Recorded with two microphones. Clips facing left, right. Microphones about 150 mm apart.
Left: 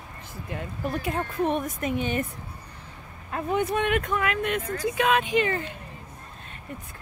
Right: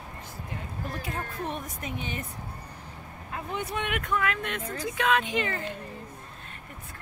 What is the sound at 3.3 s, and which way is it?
Speech, 55° left (ahead or behind).